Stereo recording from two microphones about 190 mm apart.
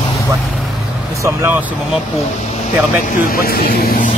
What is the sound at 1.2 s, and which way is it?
Speech, 15° right (ahead or behind).